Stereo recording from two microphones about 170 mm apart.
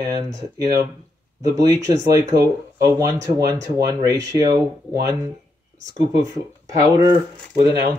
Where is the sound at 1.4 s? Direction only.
20° right (ahead or behind).